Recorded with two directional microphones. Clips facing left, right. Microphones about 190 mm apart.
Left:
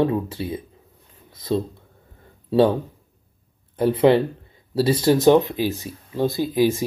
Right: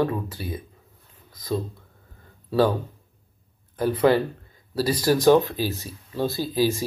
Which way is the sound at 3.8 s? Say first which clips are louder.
Left 3 dB; 25° left (ahead or behind).